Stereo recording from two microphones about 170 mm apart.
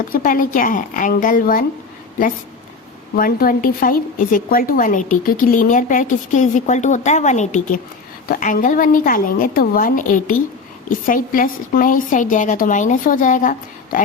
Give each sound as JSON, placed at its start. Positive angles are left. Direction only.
{"t": 0.1, "sound": "a woman's voice", "side_deg": 55}
{"t": 3.2, "sound": "a woman's voice", "side_deg": 55}